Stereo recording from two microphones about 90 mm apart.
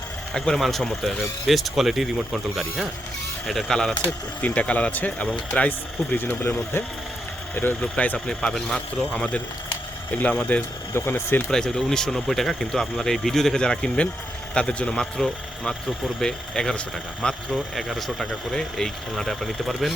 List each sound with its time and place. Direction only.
0.3 s speech: 5° left (ahead or behind)
4.4 s speech: 15° left (ahead or behind)
10.2 s speech: 20° left (ahead or behind)
11.5 s speech: 5° left (ahead or behind)